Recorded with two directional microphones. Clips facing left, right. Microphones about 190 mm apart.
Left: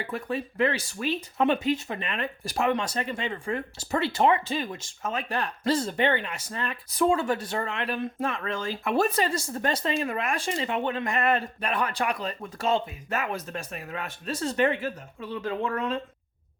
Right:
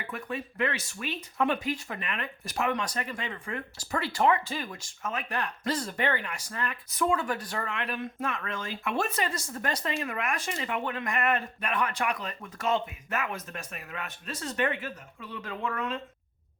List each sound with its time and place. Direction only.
0.0 s speech: 30° left (ahead or behind)